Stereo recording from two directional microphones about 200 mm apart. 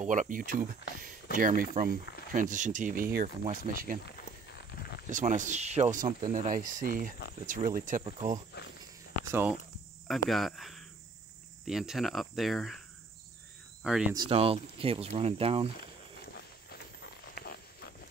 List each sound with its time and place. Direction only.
0.0 s speech: 40° right (ahead or behind)
4.7 s a sound: 50° left (ahead or behind)
5.1 s speech: 40° right (ahead or behind)
8.6 s speech: 55° left (ahead or behind)
10.0 s cricket: centre (ahead or behind)
13.8 s cricket: 5° right (ahead or behind)
14.1 s speech: 25° right (ahead or behind)
17.0 s a sound: 50° left (ahead or behind)